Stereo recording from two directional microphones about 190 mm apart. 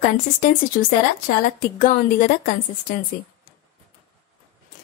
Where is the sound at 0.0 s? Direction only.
45° left (ahead or behind).